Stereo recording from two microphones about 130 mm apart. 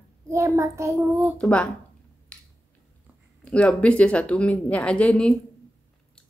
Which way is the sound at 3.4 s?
10° left (ahead or behind).